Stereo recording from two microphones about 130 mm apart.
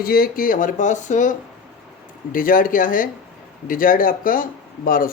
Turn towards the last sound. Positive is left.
turn(degrees=90)